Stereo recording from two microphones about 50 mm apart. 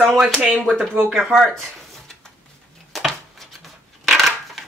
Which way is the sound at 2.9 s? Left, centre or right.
Centre.